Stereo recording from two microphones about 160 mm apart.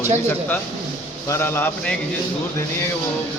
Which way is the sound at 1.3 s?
15° left (ahead or behind).